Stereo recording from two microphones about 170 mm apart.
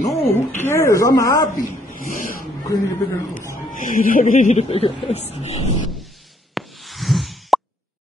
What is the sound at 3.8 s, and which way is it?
Speech, 55° left (ahead or behind).